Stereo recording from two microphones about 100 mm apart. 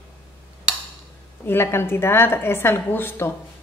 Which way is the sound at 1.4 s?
25° left (ahead or behind).